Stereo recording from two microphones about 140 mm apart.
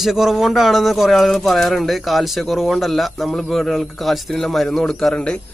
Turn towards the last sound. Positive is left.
turn(degrees=5)  # may be behind; listen again after turning